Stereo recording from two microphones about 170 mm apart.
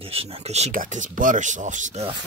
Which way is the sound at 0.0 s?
35° right (ahead or behind).